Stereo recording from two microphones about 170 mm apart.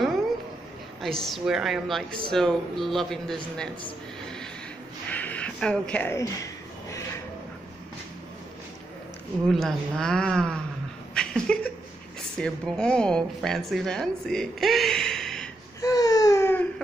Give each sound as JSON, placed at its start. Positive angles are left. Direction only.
{"t": 1.0, "sound": "a woman's voice", "side_deg": 0}
{"t": 5.1, "sound": "a sound", "side_deg": 10}
{"t": 9.5, "sound": "a woman's voice", "side_deg": 0}
{"t": 11.1, "sound": "a sound", "side_deg": 5}
{"t": 12.4, "sound": "a woman's voice", "side_deg": 5}
{"t": 15.8, "sound": "baby cry", "side_deg": 20}